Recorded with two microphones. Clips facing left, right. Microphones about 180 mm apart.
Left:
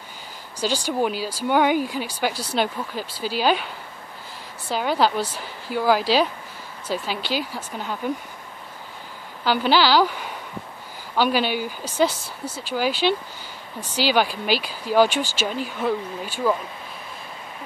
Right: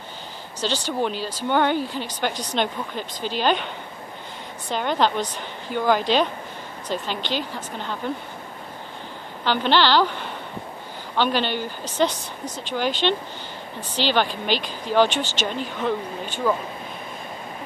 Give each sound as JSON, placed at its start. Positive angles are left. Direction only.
{"t": 0.6, "sound": "speech", "side_deg": 10}
{"t": 9.4, "sound": "speech", "side_deg": 5}